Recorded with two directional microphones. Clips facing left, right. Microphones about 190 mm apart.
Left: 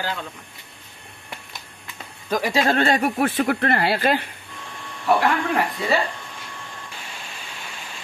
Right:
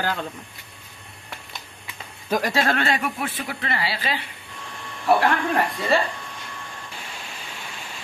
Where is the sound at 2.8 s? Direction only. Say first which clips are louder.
Left 5 dB; 40° left (ahead or behind).